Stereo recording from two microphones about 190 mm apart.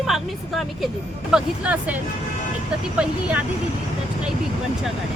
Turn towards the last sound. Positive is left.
turn(degrees=-5)  # may be behind; listen again after turning